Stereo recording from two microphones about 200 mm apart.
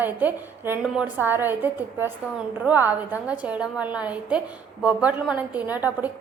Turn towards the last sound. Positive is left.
turn(degrees=-10)  # may be behind; listen again after turning